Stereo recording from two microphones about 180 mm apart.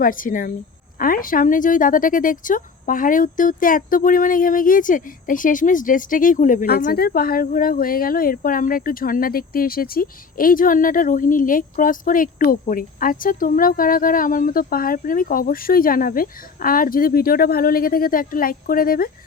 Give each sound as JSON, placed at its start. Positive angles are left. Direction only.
{"t": 0.0, "sound": "speech", "side_deg": 50}